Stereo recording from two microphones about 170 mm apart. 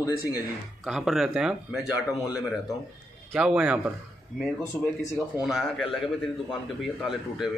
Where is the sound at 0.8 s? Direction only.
Centre (ahead or behind).